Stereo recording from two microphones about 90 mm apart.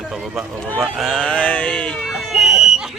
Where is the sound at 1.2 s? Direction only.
15° left (ahead or behind).